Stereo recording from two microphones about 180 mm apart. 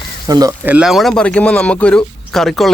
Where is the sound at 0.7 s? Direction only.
5° right (ahead or behind).